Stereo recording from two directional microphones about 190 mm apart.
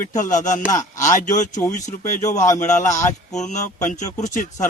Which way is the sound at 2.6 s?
40° left (ahead or behind).